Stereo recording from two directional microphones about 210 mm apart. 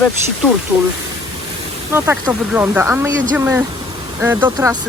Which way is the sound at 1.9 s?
10° right (ahead or behind).